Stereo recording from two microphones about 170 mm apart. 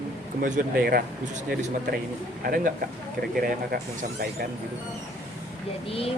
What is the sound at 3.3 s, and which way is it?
Speech, 60° right (ahead or behind).